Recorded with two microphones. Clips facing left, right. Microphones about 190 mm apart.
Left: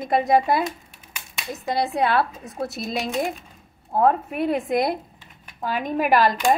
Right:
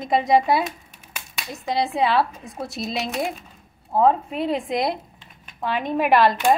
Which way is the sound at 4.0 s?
55° left (ahead or behind).